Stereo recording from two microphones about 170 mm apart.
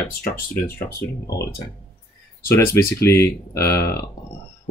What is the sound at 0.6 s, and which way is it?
Speech, 65° left (ahead or behind).